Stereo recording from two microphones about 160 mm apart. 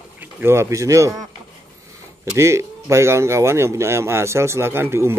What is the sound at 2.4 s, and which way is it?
Speech, 15° right (ahead or behind).